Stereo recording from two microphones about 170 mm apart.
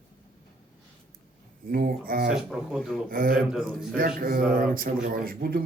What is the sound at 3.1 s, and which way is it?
A man's voice, 55° right (ahead or behind).